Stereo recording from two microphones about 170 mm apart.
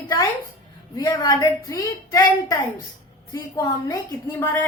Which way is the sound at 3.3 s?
15° left (ahead or behind).